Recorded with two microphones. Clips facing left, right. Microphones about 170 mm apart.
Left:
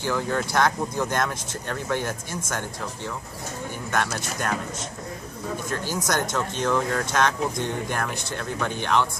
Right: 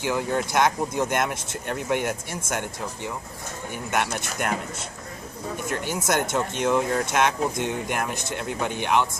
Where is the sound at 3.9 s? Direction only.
20° right (ahead or behind).